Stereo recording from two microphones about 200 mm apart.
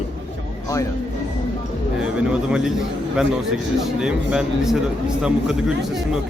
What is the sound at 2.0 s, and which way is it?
Speech, 5° right (ahead or behind).